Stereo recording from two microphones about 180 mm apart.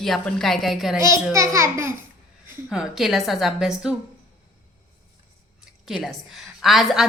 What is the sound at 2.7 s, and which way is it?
Speech, 5° right (ahead or behind).